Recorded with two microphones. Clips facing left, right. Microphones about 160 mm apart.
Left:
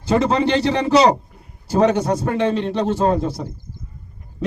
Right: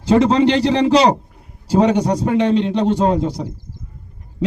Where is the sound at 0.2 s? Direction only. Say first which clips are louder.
Right 4 dB; 20° right (ahead or behind).